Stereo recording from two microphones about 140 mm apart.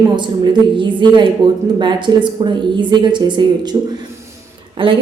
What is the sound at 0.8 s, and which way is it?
A woman's voice, 35° right (ahead or behind).